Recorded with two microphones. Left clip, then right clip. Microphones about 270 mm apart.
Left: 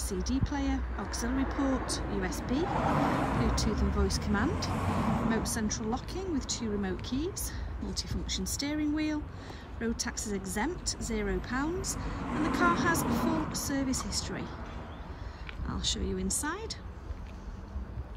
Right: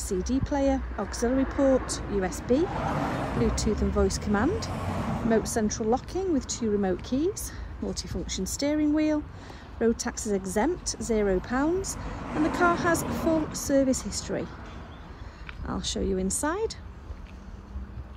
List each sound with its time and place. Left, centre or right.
0.1 s speech: centre
1.3 s speech: left
2.1 s speech: centre
2.7 s speech: left; by 4.8 s centre
4.8 s speech: centre
5.3 s speech: centre
15.7 s speech: centre